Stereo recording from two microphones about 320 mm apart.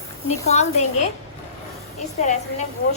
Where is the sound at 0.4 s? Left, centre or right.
Left.